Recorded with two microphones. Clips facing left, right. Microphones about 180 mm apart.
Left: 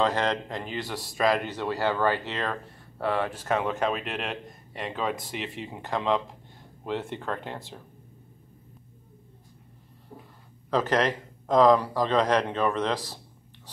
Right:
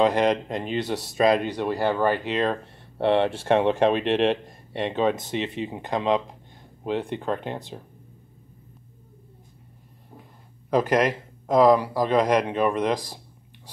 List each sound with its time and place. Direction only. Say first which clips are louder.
0.0 s speech: right 5 dB; 15° right (ahead or behind)
10.7 s speech: right 3 dB; 10° right (ahead or behind)